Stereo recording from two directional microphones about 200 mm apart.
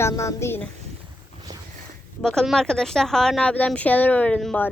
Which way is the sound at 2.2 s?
5° left (ahead or behind).